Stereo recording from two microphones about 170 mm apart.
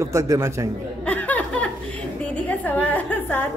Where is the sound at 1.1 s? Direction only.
10° left (ahead or behind).